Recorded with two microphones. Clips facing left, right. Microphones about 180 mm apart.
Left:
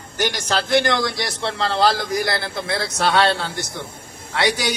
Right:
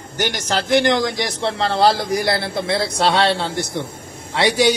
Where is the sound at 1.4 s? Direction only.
25° right (ahead or behind).